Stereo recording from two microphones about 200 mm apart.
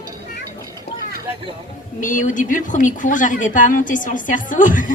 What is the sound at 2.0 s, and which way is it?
Speech, 40° left (ahead or behind).